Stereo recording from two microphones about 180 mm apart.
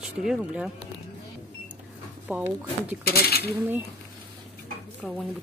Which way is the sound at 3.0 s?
60° left (ahead or behind).